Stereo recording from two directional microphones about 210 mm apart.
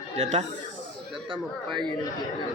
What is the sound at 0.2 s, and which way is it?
Speech, 35° right (ahead or behind).